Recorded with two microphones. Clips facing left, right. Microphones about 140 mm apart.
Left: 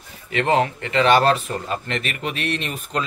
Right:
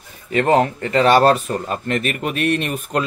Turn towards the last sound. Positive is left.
turn(degrees=-50)  # may be behind; listen again after turning